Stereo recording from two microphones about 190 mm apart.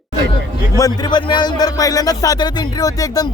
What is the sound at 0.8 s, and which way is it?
Speech, 20° left (ahead or behind).